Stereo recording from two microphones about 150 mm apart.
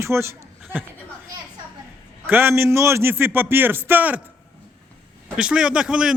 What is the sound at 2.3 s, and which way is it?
A man's voice, 15° right (ahead or behind).